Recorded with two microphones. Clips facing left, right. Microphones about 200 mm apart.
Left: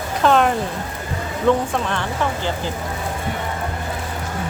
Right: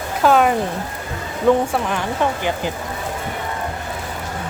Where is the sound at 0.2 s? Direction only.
5° right (ahead or behind).